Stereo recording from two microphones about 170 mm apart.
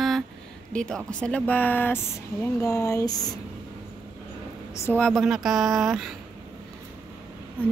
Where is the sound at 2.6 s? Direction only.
20° left (ahead or behind).